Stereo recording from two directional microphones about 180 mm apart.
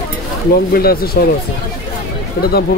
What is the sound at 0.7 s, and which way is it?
Speech, 60° left (ahead or behind).